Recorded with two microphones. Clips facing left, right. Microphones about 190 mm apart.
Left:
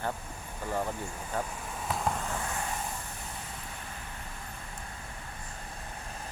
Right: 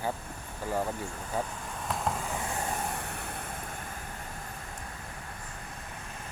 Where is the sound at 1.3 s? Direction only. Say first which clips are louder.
Right 1 dB; 10° right (ahead or behind).